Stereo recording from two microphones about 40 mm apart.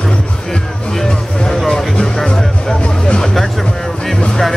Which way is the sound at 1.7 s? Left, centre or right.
Centre.